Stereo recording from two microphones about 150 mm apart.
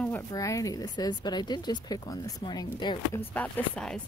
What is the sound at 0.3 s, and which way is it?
Speech, 20° left (ahead or behind).